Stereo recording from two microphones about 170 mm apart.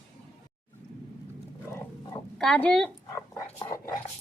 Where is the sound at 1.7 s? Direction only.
20° left (ahead or behind).